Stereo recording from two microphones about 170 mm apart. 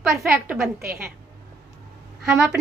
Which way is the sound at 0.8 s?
60° right (ahead or behind).